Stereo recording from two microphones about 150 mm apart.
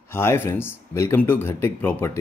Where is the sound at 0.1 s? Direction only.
15° left (ahead or behind).